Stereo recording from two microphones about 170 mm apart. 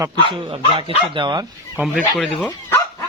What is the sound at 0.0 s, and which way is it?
Speech, 30° right (ahead or behind).